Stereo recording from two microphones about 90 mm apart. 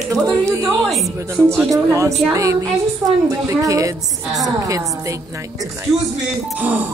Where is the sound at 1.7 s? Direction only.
35° right (ahead or behind).